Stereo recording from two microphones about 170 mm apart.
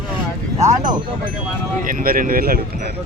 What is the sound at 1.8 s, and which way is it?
Speech, 55° right (ahead or behind).